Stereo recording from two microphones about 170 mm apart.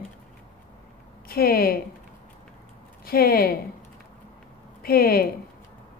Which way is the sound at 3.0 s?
60° left (ahead or behind).